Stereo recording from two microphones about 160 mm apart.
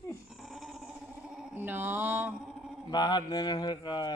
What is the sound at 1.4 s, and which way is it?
Mantra, 10° right (ahead or behind).